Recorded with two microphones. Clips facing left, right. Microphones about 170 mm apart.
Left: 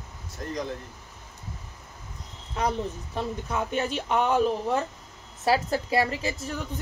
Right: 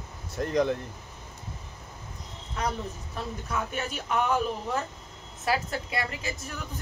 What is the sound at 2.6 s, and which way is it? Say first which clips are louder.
A man's voice: left 4 dB; 30° left (ahead or behind).